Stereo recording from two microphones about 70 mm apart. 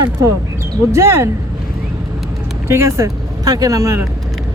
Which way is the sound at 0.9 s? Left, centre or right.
Right.